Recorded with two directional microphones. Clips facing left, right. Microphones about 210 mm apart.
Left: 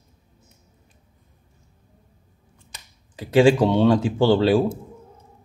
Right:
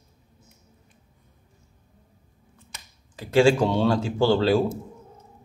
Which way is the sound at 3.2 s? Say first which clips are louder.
Left 3 dB; 15° left (ahead or behind).